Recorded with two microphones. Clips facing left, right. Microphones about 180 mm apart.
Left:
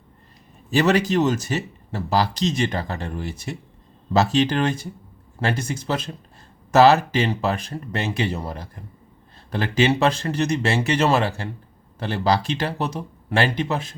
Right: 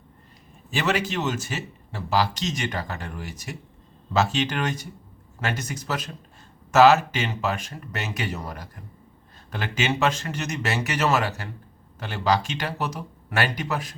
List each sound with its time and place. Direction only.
0.7 s speech: 40° left (ahead or behind)